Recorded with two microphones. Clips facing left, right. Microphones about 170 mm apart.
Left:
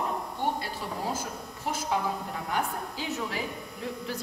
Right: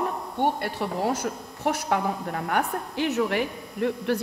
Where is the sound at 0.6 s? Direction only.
70° right (ahead or behind).